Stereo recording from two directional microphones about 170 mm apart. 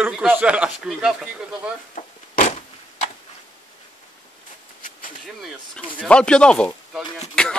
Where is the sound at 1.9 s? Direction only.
45° left (ahead or behind).